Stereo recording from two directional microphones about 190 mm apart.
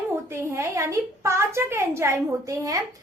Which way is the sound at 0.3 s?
15° right (ahead or behind).